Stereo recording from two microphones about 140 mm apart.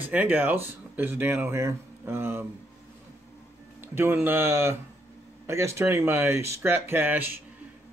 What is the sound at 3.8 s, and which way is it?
Speech, 15° right (ahead or behind).